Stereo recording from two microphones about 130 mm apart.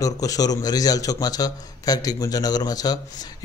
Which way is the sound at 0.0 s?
25° left (ahead or behind).